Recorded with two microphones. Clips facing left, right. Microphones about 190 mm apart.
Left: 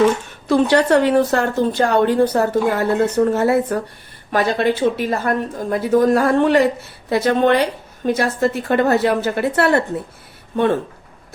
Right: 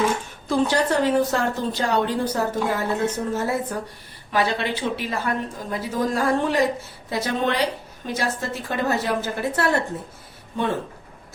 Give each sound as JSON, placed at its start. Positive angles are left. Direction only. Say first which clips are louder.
{"t": 0.4, "sound": "a woman's voice", "louder": "left 6 dB", "side_deg": 70}
{"t": 4.3, "sound": "a woman's voice", "louder": "left 6 dB", "side_deg": 50}